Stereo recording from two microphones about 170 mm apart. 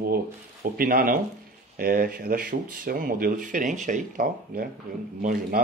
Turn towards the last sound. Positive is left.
turn(degrees=-60)  # may be behind; listen again after turning